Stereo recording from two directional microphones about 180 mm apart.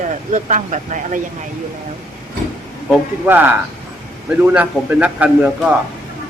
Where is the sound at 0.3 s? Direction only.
45° right (ahead or behind).